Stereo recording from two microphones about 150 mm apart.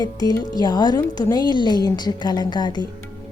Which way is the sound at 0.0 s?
25° left (ahead or behind).